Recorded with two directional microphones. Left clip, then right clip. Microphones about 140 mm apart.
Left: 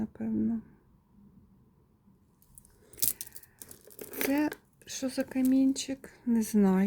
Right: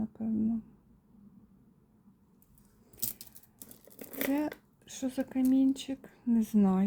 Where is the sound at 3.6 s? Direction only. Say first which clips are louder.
Left 3 dB; 45° left (ahead or behind).